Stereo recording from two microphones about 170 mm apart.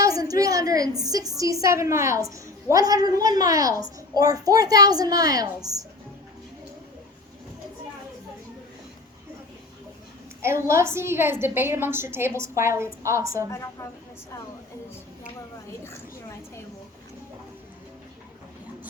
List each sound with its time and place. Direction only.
0.0 s a sound: 20° right (ahead or behind)
1.0 s a woman's voice: 20° right (ahead or behind)
10.4 s a woman's voice: 15° right (ahead or behind)